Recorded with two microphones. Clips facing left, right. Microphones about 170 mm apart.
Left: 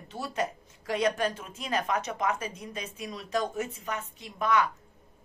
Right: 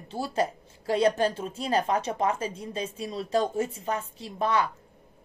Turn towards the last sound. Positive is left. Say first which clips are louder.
# right 1 dB
turn(degrees=-30)  # may be behind; listen again after turning